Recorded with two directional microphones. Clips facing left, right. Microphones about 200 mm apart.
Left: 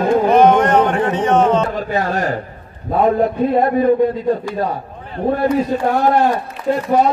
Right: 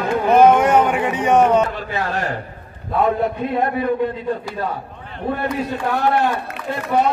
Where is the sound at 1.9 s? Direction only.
40° left (ahead or behind).